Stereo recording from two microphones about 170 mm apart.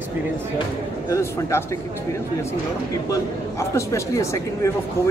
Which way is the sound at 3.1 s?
15° left (ahead or behind).